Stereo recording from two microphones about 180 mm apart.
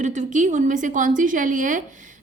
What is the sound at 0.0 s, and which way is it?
Speech, 40° right (ahead or behind).